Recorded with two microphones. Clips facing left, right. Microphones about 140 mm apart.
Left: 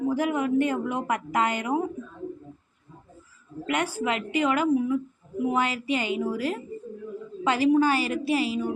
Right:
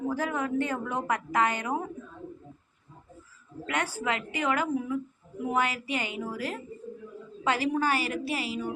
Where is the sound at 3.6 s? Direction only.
20° left (ahead or behind).